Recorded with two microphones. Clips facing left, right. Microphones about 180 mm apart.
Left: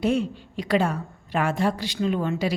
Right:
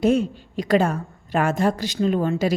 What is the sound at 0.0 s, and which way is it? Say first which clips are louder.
A woman's voice: right 4 dB; 45° right (ahead or behind).